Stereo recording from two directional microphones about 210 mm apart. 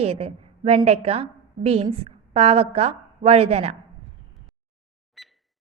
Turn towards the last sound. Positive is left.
turn(degrees=0)  # may be behind; listen again after turning